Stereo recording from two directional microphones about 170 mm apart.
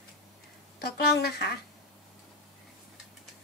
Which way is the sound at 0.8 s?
70° left (ahead or behind).